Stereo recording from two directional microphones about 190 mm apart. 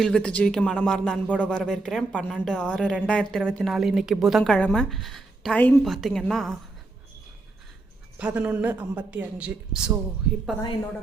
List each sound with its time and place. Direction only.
0.0 s speech: 5° left (ahead or behind)
8.2 s speech: 5° right (ahead or behind)